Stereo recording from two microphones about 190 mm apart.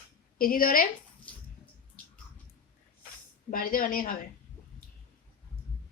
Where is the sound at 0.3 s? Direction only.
50° left (ahead or behind).